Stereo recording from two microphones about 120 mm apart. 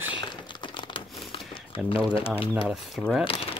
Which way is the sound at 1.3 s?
50° left (ahead or behind).